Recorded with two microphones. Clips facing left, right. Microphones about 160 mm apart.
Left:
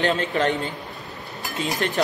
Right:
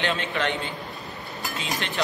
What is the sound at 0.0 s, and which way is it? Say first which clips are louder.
Speech: left 5 dB; 40° left (ahead or behind).